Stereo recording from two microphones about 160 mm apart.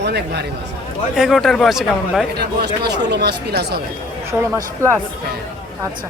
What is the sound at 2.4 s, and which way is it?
Speech, 90° right.